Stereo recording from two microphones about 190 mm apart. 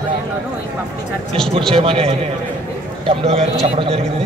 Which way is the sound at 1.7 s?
30° right (ahead or behind).